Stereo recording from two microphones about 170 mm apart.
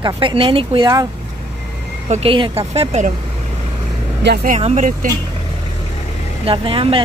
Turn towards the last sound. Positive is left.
turn(degrees=-30)  # may be behind; listen again after turning